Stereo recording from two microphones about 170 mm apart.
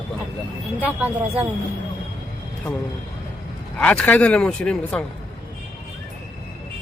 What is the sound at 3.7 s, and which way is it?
Speech, 5° left (ahead or behind).